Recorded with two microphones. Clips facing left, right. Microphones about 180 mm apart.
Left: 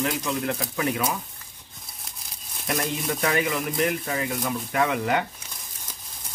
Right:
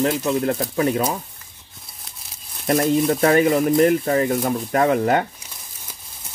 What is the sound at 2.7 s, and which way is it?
Speech, 40° right (ahead or behind).